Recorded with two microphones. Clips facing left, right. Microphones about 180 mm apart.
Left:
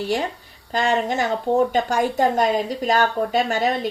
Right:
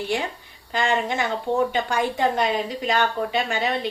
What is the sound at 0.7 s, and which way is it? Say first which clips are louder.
A woman's voice: left 2 dB; 40° left (ahead or behind).